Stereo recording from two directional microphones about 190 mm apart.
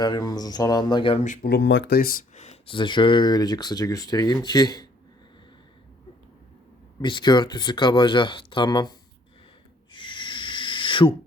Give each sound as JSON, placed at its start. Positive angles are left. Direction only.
{"t": 0.0, "sound": "speech", "side_deg": 20}
{"t": 1.2, "sound": "speech", "side_deg": 40}
{"t": 1.5, "sound": "speech", "side_deg": 65}
{"t": 7.0, "sound": "speech", "side_deg": 25}
{"t": 9.9, "sound": "a sound", "side_deg": 25}